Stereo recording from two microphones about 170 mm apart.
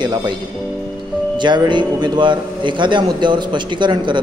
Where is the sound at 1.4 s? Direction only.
25° right (ahead or behind).